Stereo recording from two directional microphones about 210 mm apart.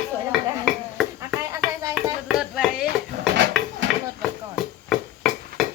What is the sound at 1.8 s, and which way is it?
Music, 15° right (ahead or behind).